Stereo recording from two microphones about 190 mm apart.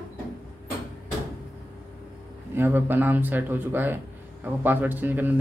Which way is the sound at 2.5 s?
10° right (ahead or behind).